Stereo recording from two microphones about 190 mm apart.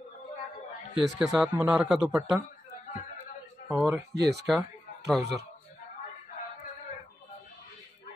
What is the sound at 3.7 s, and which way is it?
Speech, 10° right (ahead or behind).